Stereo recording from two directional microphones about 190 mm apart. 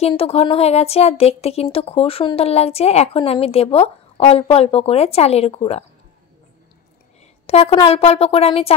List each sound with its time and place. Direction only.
0.0 s speech: 30° left (ahead or behind)
7.4 s speech: 30° left (ahead or behind)